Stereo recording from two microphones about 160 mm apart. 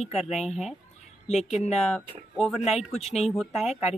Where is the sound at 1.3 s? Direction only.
45° left (ahead or behind).